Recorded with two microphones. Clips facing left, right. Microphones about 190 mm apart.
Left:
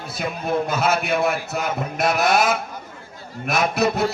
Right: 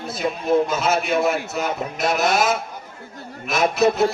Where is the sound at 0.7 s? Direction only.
60° left (ahead or behind).